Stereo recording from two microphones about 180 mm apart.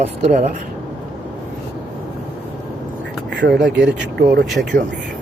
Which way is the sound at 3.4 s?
75° right (ahead or behind).